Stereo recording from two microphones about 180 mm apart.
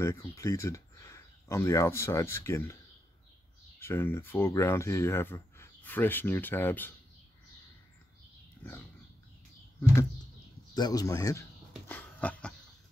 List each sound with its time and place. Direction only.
0.0 s speech: 15° left (ahead or behind)
3.8 s speech: 15° left (ahead or behind)
10.7 s speech: 20° left (ahead or behind)
11.9 s dog: 10° left (ahead or behind)